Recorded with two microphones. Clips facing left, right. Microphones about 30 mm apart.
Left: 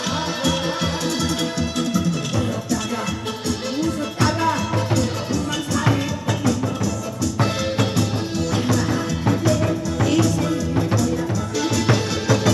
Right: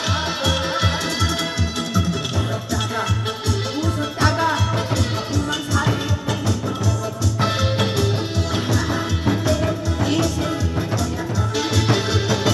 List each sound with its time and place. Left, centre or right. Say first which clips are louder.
0.4 s music: even; right
3.8 s music: even; centre
7.3 s music: right 1 dB; right
10.0 s music: left 2 dB; right